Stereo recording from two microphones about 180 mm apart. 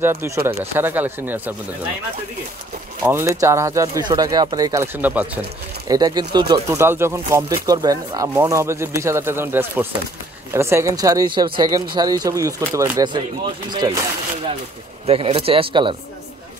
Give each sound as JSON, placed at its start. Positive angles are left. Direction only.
{"t": 0.0, "sound": "speech", "side_deg": -10}
{"t": 3.1, "sound": "speech", "side_deg": -15}
{"t": 5.0, "sound": "speech", "side_deg": -10}
{"t": 5.9, "sound": "speech", "side_deg": -20}
{"t": 15.0, "sound": "speech", "side_deg": -30}